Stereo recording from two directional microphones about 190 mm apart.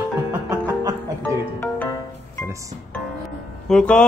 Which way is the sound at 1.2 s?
10° left (ahead or behind).